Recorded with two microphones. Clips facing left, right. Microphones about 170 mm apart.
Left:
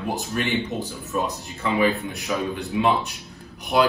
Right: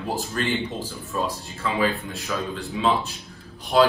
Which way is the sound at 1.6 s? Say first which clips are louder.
Left 3 dB; 20° left (ahead or behind).